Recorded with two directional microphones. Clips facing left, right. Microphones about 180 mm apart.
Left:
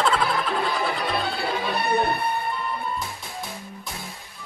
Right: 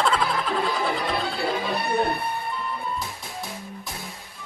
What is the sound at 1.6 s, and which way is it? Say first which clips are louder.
Music: left 4 dB; 65° left (ahead or behind).